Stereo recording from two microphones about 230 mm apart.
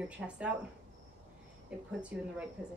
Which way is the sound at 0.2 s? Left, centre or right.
Centre.